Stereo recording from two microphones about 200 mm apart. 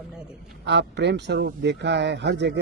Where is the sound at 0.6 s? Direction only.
60° right (ahead or behind).